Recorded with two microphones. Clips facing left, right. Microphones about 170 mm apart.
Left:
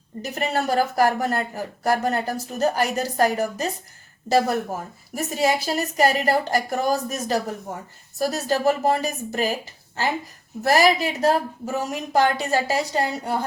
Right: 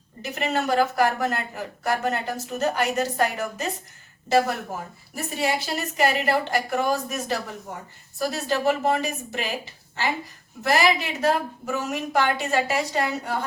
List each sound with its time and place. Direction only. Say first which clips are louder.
0.2 s a woman's voice: left 1 dB; 40° left (ahead or behind)
5.1 s a woman's voice: left 4 dB; 40° left (ahead or behind)
10.6 s a woman's voice: left 3 dB; 40° left (ahead or behind)